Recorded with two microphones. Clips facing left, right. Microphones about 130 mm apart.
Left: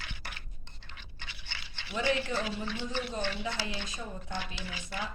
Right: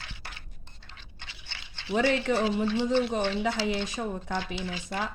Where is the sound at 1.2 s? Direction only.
20° right (ahead or behind).